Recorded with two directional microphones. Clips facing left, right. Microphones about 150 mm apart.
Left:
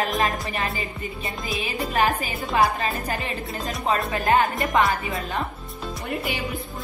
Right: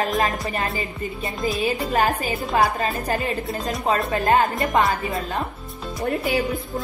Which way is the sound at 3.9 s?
30° right (ahead or behind).